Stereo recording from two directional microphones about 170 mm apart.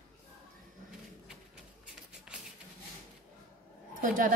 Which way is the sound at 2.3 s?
5° right (ahead or behind).